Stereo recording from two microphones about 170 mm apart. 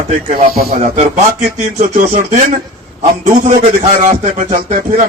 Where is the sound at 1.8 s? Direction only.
50° right (ahead or behind).